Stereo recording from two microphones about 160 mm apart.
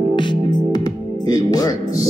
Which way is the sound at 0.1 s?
30° left (ahead or behind).